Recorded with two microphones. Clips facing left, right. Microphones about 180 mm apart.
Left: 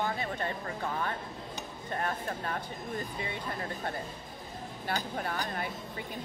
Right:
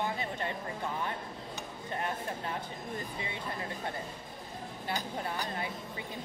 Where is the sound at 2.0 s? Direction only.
20° right (ahead or behind).